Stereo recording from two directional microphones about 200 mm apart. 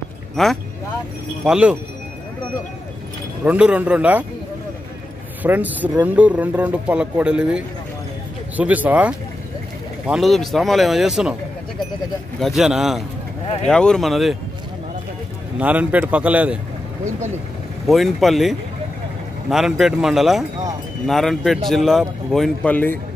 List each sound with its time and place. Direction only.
0.4 s a man's voice: centre (ahead or behind)
3.4 s speech: 5° right (ahead or behind)
5.4 s a man's voice: 10° right (ahead or behind)
12.4 s a man's voice: centre (ahead or behind)
15.6 s speech: 5° right (ahead or behind)
17.8 s a man's voice: centre (ahead or behind)